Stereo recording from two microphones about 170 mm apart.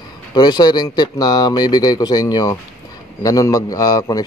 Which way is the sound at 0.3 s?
25° left (ahead or behind).